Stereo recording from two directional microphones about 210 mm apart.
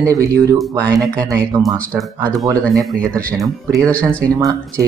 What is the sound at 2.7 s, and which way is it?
Speech, 5° left (ahead or behind).